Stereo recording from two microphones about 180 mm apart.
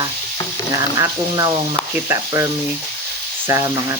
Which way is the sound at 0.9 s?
20° right (ahead or behind).